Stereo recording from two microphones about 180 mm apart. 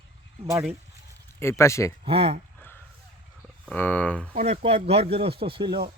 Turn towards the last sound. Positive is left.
turn(degrees=-30)  # may be behind; listen again after turning